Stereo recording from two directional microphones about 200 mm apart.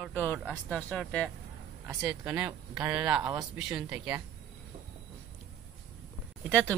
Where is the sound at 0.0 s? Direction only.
5° left (ahead or behind).